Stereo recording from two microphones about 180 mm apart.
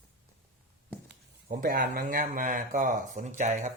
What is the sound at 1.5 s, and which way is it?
Speech, 50° right (ahead or behind).